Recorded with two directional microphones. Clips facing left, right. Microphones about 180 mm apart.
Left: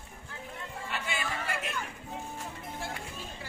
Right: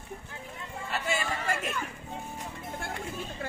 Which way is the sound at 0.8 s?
40° right (ahead or behind).